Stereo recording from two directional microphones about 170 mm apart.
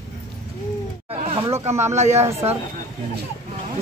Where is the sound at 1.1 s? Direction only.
35° right (ahead or behind).